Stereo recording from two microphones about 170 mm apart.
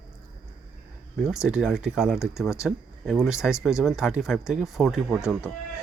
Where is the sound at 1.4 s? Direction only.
Centre (ahead or behind).